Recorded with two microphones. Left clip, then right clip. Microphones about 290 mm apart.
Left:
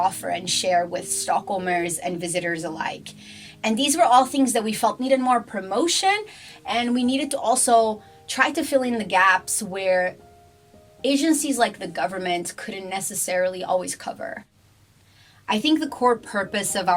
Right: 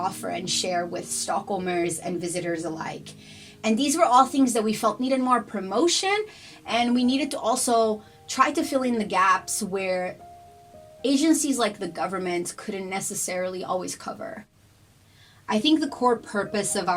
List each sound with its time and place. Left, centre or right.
0.0 s a woman's voice: left
15.4 s a woman's voice: left